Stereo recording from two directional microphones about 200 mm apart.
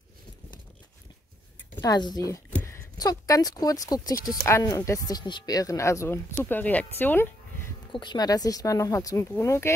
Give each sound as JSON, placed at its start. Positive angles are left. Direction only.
{"t": 1.8, "sound": "speech", "side_deg": 20}
{"t": 7.9, "sound": "speech", "side_deg": 20}